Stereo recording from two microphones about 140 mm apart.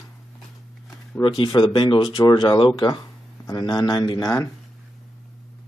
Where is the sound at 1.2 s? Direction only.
35° left (ahead or behind).